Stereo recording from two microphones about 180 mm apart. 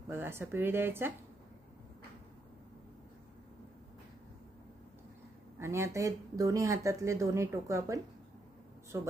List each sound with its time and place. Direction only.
0.1 s speech: 10° right (ahead or behind)
5.5 s speech: 15° right (ahead or behind)
8.9 s speech: 15° right (ahead or behind)